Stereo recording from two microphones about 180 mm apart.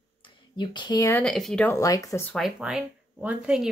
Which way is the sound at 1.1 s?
5° left (ahead or behind).